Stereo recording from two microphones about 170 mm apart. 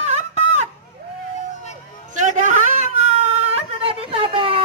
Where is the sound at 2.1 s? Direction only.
45° right (ahead or behind).